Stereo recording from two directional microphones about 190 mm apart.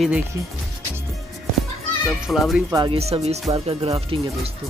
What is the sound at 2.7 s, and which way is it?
Speech, 20° right (ahead or behind).